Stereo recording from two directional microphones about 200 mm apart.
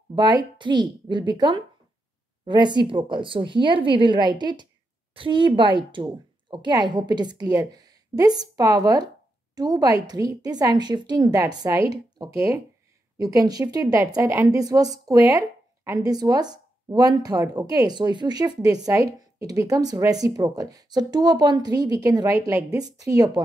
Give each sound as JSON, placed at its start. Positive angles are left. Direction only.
{"t": 0.1, "sound": "a woman's voice", "side_deg": -20}